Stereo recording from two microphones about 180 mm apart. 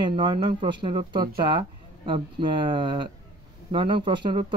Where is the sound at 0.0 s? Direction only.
25° right (ahead or behind).